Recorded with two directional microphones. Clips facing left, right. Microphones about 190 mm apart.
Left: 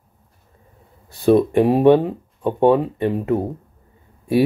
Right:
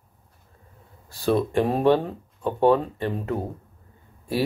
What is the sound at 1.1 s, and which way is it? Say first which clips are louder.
Speech: left 7 dB; 20° left (ahead or behind).